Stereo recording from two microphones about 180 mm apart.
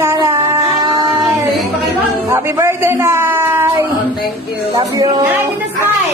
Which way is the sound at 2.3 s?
15° right (ahead or behind).